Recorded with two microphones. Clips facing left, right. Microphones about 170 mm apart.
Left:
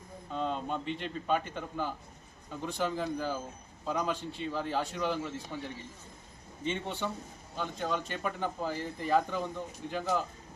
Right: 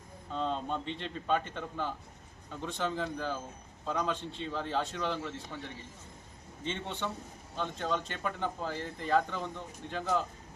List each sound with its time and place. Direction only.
0.3 s speech: 5° left (ahead or behind)